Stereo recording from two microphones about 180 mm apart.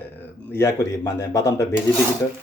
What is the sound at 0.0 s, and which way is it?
A man's voice, 10° left (ahead or behind).